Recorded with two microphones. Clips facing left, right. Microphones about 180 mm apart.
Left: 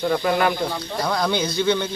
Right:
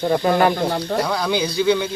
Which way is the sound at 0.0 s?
30° right (ahead or behind).